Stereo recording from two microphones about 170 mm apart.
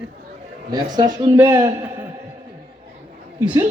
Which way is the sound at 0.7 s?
25° right (ahead or behind).